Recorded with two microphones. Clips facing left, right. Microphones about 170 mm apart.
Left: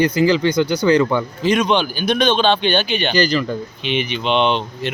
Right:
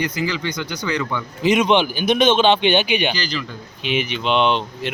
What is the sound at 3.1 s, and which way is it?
Speech, 45° left (ahead or behind).